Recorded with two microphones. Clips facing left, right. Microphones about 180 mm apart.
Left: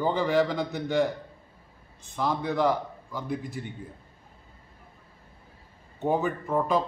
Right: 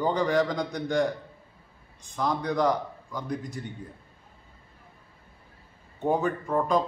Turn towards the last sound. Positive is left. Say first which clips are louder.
# right 1 dB
turn(degrees=5)  # may be behind; listen again after turning